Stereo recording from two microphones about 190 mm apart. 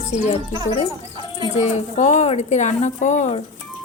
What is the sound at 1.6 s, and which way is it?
Speech, 35° left (ahead or behind).